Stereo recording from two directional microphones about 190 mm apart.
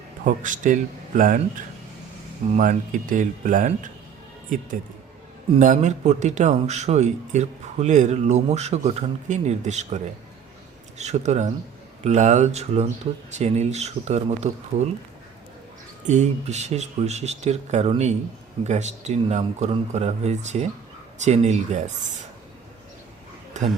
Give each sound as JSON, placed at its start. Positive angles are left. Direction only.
{"t": 0.3, "sound": "speech", "side_deg": -45}
{"t": 2.5, "sound": "speech", "side_deg": -45}
{"t": 5.5, "sound": "a man's voice", "side_deg": -40}
{"t": 16.0, "sound": "a man's voice", "side_deg": -35}
{"t": 23.6, "sound": "a man's voice", "side_deg": -40}